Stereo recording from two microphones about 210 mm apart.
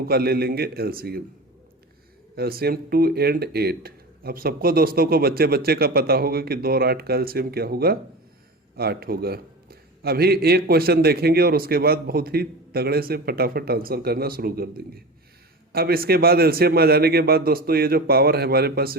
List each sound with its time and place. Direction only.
0.0 s a man's voice: 45° right (ahead or behind)
2.3 s a man's voice: 45° right (ahead or behind)